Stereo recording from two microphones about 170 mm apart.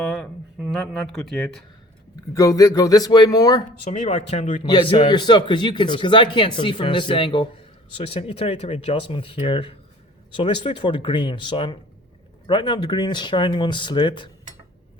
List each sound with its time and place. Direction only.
0.0 s speech: 10° left (ahead or behind)
2.3 s a man's voice: 20° left (ahead or behind)
3.8 s speech: 40° left (ahead or behind)
4.6 s a man's voice: 25° left (ahead or behind)